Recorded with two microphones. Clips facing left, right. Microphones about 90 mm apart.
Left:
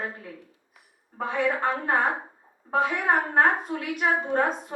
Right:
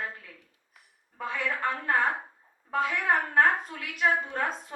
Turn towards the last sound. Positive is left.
turn(degrees=40)  # may be behind; listen again after turning